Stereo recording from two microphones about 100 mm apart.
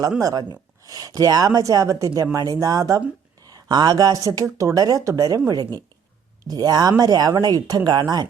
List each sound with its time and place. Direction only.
0.2 s speech: 40° right (ahead or behind)
6.4 s speech: 40° right (ahead or behind)